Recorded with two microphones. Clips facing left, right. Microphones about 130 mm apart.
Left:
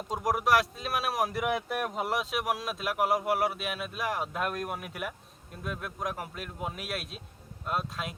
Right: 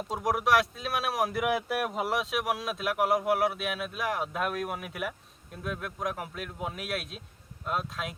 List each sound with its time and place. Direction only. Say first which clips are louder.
0.1 s speech: even; centre (ahead or behind)